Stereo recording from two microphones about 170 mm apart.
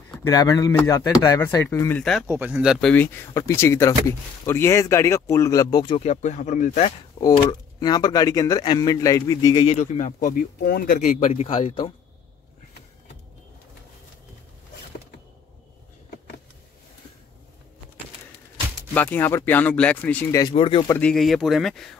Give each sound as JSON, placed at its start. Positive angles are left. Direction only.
{"t": 0.3, "sound": "a man's voice", "side_deg": 20}
{"t": 2.2, "sound": "speech", "side_deg": -10}
{"t": 2.9, "sound": "a man's voice", "side_deg": 10}
{"t": 6.0, "sound": "speech", "side_deg": 45}
{"t": 7.8, "sound": "a man's voice", "side_deg": 25}
{"t": 9.7, "sound": "speech", "side_deg": 45}
{"t": 18.9, "sound": "speech", "side_deg": 10}
{"t": 20.5, "sound": "speech", "side_deg": 30}
{"t": 20.9, "sound": "speech", "side_deg": 5}